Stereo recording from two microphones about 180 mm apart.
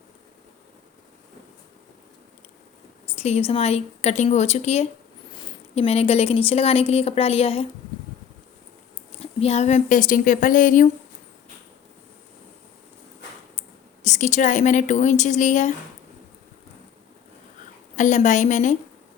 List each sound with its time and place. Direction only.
3.2 s a woman's voice: 35° left (ahead or behind)
9.1 s a woman's voice: 35° left (ahead or behind)
14.0 s a woman's voice: 40° left (ahead or behind)
17.9 s a woman's voice: 45° left (ahead or behind)